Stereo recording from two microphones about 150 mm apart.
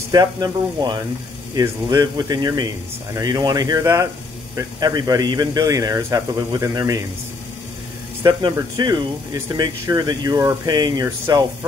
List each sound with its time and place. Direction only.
0.1 s speech: 25° right (ahead or behind)
8.2 s speech: 25° right (ahead or behind)